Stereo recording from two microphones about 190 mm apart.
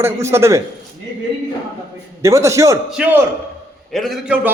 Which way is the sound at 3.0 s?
5° right (ahead or behind).